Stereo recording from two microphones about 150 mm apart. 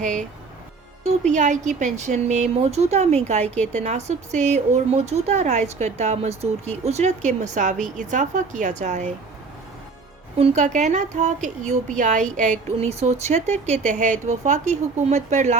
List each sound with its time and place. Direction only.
0.0 s speech: 55° right (ahead or behind)
3.4 s a woman's voice: 10° left (ahead or behind)
3.7 s speech: 50° right (ahead or behind)
10.3 s speech: 45° right (ahead or behind)
12.7 s speech: 45° right (ahead or behind)